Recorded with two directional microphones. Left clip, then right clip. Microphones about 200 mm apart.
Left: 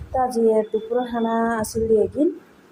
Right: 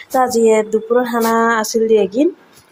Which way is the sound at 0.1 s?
25° right (ahead or behind).